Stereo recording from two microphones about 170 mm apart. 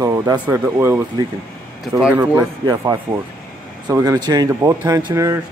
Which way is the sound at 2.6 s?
20° right (ahead or behind).